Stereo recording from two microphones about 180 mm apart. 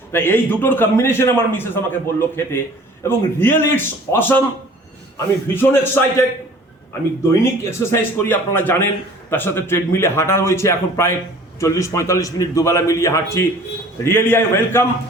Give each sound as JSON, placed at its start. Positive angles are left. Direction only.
{"t": 0.1, "sound": "a man's voice", "side_deg": 10}
{"t": 7.2, "sound": "a man's voice", "side_deg": 15}